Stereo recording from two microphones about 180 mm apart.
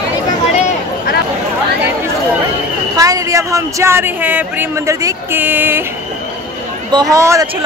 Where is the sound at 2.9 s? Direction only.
20° right (ahead or behind).